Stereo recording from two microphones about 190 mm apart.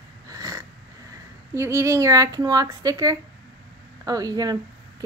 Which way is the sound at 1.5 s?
15° right (ahead or behind).